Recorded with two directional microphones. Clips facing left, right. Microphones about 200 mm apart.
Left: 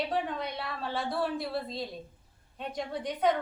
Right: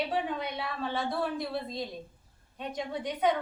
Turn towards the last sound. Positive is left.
turn(degrees=0)  # may be behind; listen again after turning